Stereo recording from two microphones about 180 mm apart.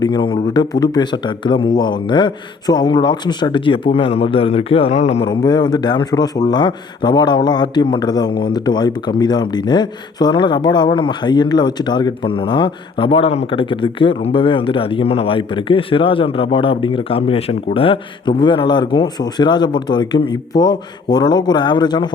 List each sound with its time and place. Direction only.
0.0 s a man's voice: 25° left (ahead or behind)
5.2 s speech: 25° left (ahead or behind)